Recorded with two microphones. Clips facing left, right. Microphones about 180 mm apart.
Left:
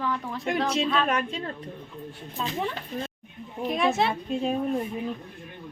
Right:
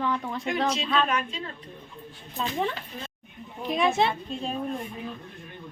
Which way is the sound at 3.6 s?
Centre (ahead or behind).